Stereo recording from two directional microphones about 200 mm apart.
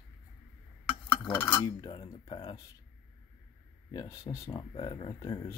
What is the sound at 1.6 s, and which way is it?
Speech, 20° left (ahead or behind).